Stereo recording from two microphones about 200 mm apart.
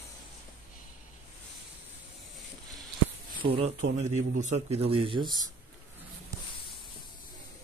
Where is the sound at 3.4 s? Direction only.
30° right (ahead or behind).